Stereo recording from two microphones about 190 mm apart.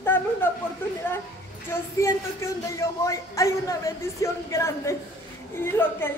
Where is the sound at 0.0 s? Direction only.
10° left (ahead or behind).